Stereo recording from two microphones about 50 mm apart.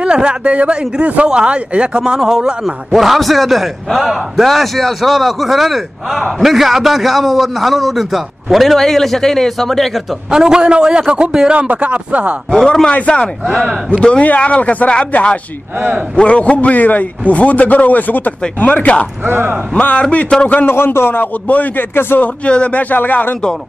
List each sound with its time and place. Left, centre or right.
0.0 s a man's voice: centre
10.3 s a man's voice: centre
12.6 s speech: centre
19.2 s speech: right
19.7 s speech: left
20.6 s a man's voice: left
21.5 s speech: left